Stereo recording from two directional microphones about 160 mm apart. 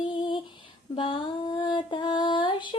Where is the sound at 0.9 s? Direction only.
35° left (ahead or behind).